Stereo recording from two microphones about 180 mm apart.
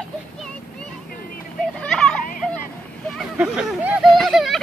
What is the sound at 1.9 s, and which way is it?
Children playing, 5° left (ahead or behind).